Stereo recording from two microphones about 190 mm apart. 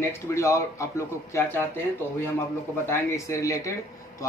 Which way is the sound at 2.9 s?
15° left (ahead or behind).